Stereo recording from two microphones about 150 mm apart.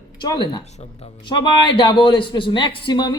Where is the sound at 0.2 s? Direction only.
30° left (ahead or behind).